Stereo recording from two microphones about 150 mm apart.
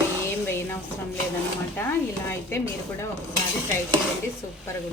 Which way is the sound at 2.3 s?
15° left (ahead or behind).